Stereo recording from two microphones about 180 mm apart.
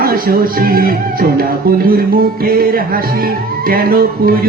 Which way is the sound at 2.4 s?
55° right (ahead or behind).